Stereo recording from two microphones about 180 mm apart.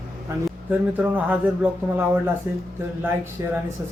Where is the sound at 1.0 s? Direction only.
10° right (ahead or behind).